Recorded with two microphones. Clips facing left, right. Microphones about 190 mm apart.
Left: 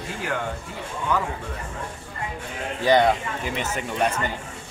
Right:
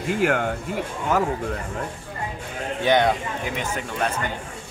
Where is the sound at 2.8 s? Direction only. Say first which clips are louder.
Left 1 dB; centre (ahead or behind).